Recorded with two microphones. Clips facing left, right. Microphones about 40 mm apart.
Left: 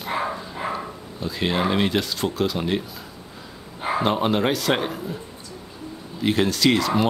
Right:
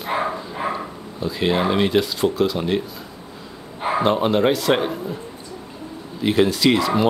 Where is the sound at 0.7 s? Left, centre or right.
Centre.